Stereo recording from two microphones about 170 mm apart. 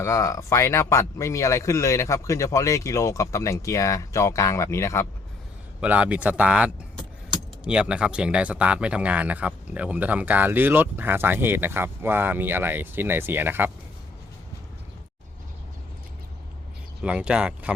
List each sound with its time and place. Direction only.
0.0 s a man's voice: 15° left (ahead or behind)
5.8 s speech: 10° right (ahead or behind)
17.0 s speech: 5° right (ahead or behind)